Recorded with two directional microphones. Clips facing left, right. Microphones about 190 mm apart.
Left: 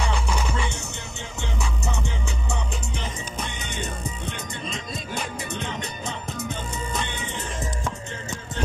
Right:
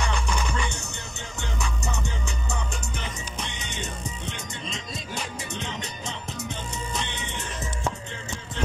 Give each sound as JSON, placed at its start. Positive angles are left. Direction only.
{"t": 0.1, "sound": "music", "side_deg": 5}
{"t": 3.3, "sound": "music", "side_deg": 55}